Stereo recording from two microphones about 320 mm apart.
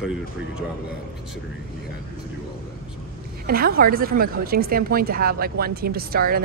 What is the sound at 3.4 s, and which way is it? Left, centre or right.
A woman's voice, right.